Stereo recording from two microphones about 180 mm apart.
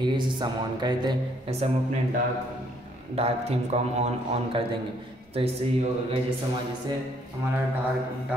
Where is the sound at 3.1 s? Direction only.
35° right (ahead or behind).